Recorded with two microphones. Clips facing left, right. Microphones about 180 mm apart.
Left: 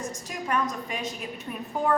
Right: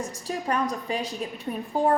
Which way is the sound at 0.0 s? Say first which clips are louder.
Right 3 dB; 35° right (ahead or behind).